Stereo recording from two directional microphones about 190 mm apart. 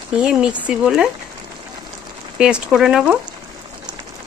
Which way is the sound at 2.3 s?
5° right (ahead or behind).